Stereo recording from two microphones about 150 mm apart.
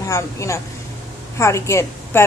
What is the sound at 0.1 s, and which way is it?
A woman's voice, 20° left (ahead or behind).